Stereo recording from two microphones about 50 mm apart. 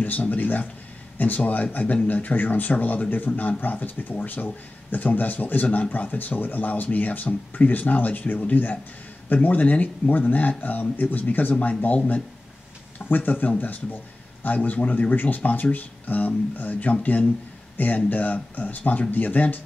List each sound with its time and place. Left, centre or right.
0.0 s speech: left
13.1 s speech: left